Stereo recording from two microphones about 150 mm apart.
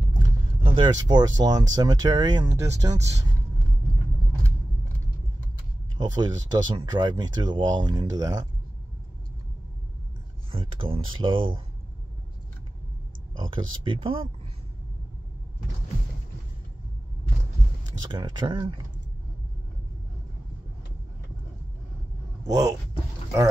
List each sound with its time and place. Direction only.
0.7 s speech: 30° right (ahead or behind)
5.9 s speech: 30° right (ahead or behind)
10.5 s speech: 35° right (ahead or behind)
13.4 s speech: 35° right (ahead or behind)
18.0 s speech: 30° right (ahead or behind)
22.5 s speech: 25° right (ahead or behind)